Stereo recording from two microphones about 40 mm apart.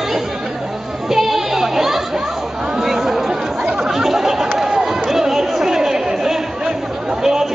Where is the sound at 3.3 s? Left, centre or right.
Centre.